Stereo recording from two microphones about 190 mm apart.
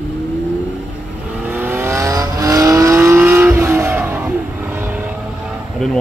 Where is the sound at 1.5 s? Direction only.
10° right (ahead or behind).